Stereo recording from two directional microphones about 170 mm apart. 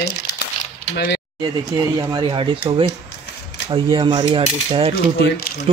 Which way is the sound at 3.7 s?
25° right (ahead or behind).